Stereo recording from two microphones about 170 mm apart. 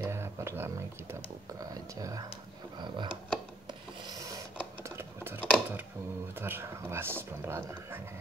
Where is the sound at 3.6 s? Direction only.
25° right (ahead or behind).